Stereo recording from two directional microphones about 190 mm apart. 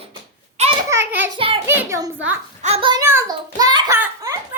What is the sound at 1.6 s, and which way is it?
Speech, 15° right (ahead or behind).